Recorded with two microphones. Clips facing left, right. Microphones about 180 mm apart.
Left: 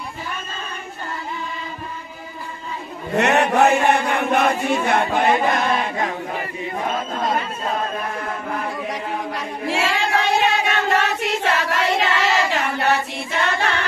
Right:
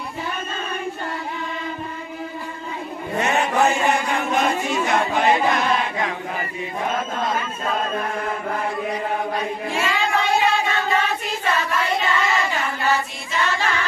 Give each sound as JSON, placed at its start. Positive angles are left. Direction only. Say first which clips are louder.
{"t": 3.2, "sound": "chant", "louder": "left 4 dB", "side_deg": 70}
{"t": 8.9, "sound": "choir", "louder": "right 2 dB", "side_deg": 85}